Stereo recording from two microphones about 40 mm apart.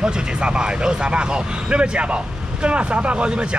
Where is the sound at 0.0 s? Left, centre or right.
Right.